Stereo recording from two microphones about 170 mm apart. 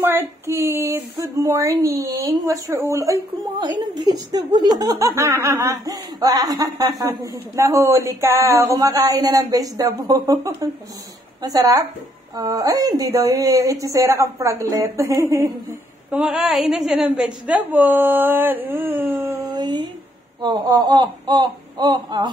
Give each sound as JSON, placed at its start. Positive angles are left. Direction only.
{"t": 0.0, "sound": "speech", "side_deg": -15}
{"t": 16.1, "sound": "a woman's voice", "side_deg": 0}
{"t": 19.6, "sound": "speech", "side_deg": -25}